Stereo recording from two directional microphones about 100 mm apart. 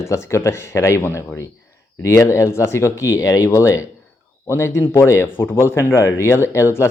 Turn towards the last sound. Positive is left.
turn(degrees=25)  # may be behind; listen again after turning